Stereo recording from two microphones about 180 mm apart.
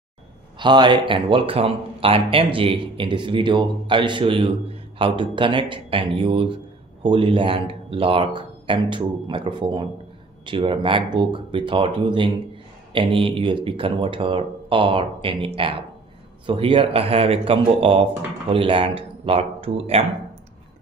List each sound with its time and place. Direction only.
0.6 s speech: 25° right (ahead or behind)